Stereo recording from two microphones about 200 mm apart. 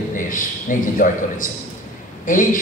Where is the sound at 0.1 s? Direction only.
40° left (ahead or behind).